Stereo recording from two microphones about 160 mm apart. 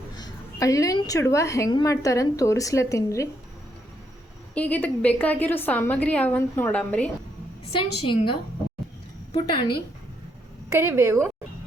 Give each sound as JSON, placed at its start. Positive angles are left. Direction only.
{"t": 0.2, "sound": "a woman's voice", "side_deg": 20}
{"t": 4.5, "sound": "a woman's voice", "side_deg": 10}
{"t": 7.6, "sound": "a woman's voice", "side_deg": 35}
{"t": 10.7, "sound": "a woman's voice", "side_deg": -15}